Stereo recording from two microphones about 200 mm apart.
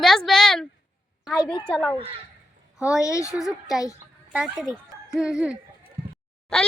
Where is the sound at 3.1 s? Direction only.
15° left (ahead or behind).